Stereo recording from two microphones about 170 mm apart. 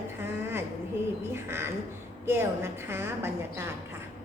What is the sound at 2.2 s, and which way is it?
A woman's voice, 15° right (ahead or behind).